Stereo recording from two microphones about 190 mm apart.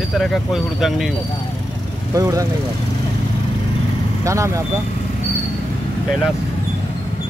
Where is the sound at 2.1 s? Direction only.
15° right (ahead or behind).